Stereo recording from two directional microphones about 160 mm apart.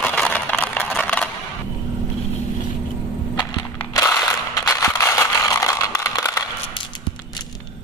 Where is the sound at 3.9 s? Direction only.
20° left (ahead or behind).